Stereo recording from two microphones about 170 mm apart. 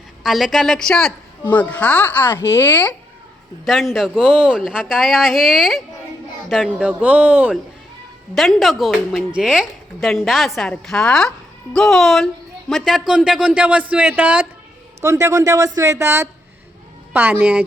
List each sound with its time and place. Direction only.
0.2 s a woman's voice: centre (ahead or behind)
3.7 s a woman's voice: centre (ahead or behind)